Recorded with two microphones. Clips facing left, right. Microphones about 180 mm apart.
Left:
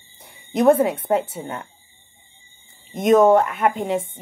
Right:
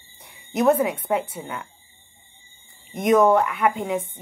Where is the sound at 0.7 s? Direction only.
35° left (ahead or behind).